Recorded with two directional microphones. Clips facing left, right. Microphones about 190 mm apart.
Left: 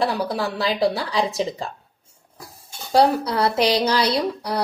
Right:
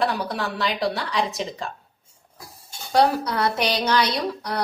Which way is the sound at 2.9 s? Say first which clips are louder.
Left 2 dB; 30° left (ahead or behind).